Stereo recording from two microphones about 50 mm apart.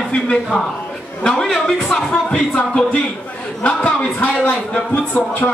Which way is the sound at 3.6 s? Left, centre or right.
Left.